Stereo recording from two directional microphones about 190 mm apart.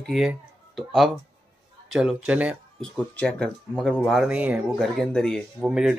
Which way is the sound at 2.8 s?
5° left (ahead or behind).